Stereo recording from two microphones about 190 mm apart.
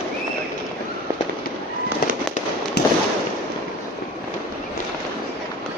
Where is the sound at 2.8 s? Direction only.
60° left (ahead or behind).